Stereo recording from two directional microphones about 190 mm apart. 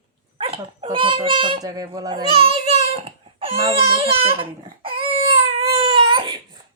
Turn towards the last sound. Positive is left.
turn(degrees=-25)  # may be behind; listen again after turning